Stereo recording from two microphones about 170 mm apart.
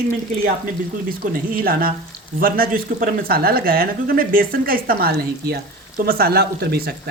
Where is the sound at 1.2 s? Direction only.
60° right (ahead or behind).